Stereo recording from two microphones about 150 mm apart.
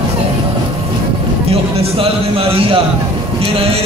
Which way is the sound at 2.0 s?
40° right (ahead or behind).